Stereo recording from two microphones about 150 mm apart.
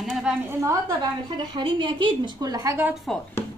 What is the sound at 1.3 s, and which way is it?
A woman's voice, 30° right (ahead or behind).